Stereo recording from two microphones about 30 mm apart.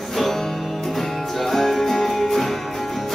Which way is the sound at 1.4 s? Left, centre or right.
Centre.